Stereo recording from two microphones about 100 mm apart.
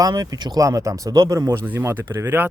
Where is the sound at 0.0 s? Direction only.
40° right (ahead or behind).